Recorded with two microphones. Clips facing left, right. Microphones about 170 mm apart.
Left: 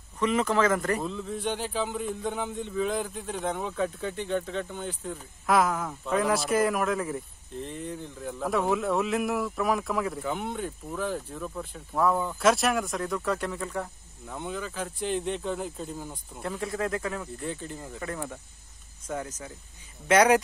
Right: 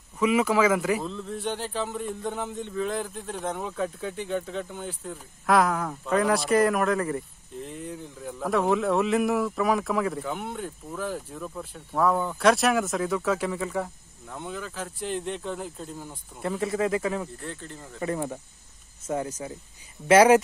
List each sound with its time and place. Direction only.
0.2 s speech: 10° right (ahead or behind)
17.5 s speech: 10° left (ahead or behind)
18.0 s speech: 25° right (ahead or behind)
19.2 s speech: 10° right (ahead or behind)